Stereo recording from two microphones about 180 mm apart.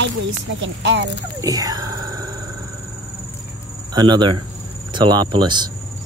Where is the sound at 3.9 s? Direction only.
25° right (ahead or behind).